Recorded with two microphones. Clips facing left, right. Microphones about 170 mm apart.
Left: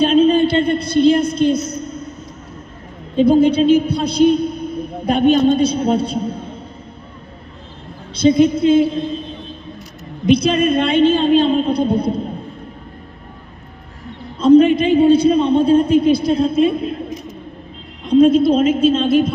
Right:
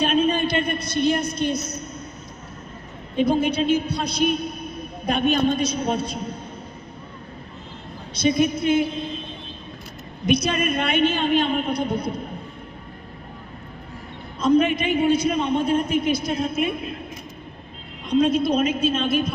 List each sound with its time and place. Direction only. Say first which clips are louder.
0.0 s a sound: left 8 dB; 30° left (ahead or behind)
3.2 s a man's voice: left 9 dB; 30° left (ahead or behind)
8.1 s a man's voice: left 8 dB; 30° left (ahead or behind)
10.2 s a man's voice: left 7 dB; 30° left (ahead or behind)
14.3 s a man's voice: left 9 dB; 30° left (ahead or behind)
18.1 s a man's voice: left 8 dB; 30° left (ahead or behind)